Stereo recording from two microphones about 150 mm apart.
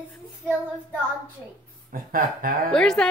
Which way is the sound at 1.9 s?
70° right (ahead or behind).